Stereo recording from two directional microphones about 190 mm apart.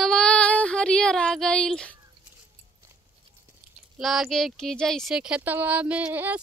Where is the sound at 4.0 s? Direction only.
Centre (ahead or behind).